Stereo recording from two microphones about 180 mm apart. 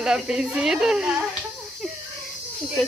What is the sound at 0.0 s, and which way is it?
A woman's voice, 5° right (ahead or behind).